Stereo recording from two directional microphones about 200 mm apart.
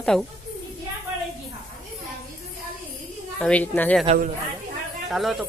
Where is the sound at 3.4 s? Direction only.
5° left (ahead or behind).